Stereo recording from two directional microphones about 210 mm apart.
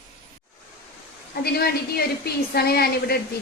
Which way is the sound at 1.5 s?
45° left (ahead or behind).